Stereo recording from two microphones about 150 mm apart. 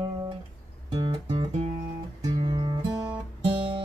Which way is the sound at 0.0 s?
30° right (ahead or behind).